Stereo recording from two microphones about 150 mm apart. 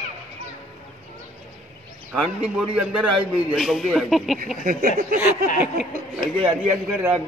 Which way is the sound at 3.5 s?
Centre (ahead or behind).